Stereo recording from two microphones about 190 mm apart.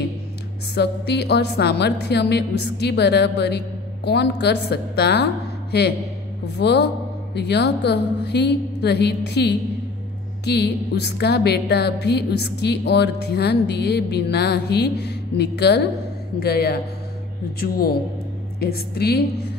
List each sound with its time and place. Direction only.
0.7 s a woman's voice: 60° left (ahead or behind)